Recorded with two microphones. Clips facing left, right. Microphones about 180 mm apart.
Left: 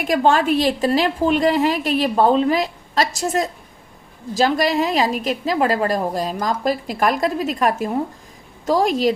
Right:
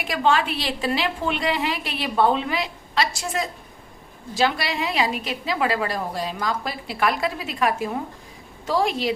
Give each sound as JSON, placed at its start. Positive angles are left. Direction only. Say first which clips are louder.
{"t": 0.0, "sound": "a woman's voice", "louder": "left 5 dB", "side_deg": 45}